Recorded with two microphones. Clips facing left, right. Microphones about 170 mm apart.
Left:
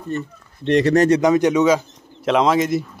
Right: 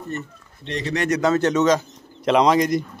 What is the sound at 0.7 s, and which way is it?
Speech, 65° left (ahead or behind).